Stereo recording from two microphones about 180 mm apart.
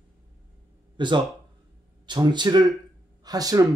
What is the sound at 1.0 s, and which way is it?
Speech, 25° right (ahead or behind).